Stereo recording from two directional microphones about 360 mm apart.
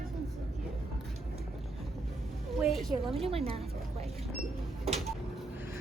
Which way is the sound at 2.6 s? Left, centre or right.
Centre.